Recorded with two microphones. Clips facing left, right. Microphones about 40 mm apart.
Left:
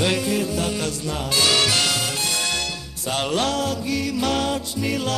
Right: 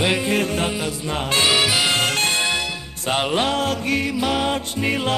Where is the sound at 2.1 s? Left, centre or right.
Right.